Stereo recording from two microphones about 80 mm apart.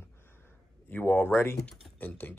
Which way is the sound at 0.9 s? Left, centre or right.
Left.